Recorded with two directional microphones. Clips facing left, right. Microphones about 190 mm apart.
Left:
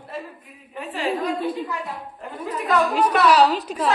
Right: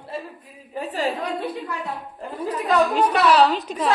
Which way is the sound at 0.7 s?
40° right (ahead or behind).